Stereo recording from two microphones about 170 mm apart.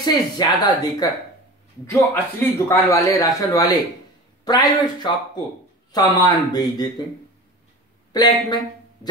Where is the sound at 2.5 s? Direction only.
15° left (ahead or behind).